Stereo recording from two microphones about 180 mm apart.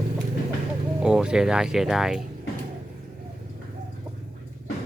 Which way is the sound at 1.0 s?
5° right (ahead or behind).